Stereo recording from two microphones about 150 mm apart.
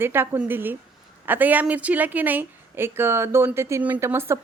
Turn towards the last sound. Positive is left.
turn(degrees=-15)  # may be behind; listen again after turning